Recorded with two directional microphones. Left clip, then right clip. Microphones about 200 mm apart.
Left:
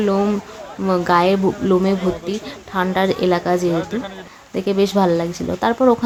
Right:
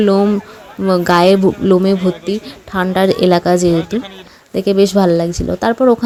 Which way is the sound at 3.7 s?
10° right (ahead or behind).